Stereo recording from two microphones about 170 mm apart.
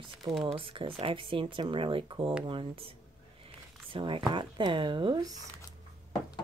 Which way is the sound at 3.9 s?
30° right (ahead or behind).